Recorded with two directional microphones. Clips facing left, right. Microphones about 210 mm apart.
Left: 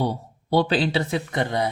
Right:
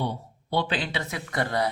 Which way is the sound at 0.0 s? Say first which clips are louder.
Left 5 dB; 40° left (ahead or behind).